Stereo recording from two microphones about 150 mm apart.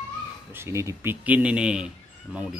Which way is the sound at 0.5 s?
20° right (ahead or behind).